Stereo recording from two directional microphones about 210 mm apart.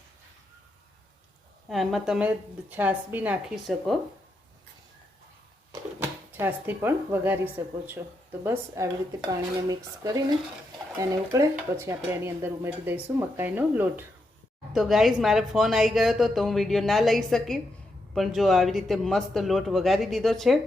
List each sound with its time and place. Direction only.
1.7 s speech: centre (ahead or behind)
6.0 s speech: 10° right (ahead or behind)